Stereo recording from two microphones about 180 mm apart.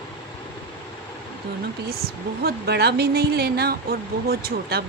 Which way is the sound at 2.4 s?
65° right (ahead or behind).